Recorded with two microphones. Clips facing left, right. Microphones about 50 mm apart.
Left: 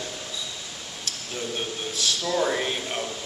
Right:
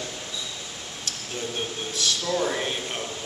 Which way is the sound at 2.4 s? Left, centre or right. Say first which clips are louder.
Left 2 dB; centre.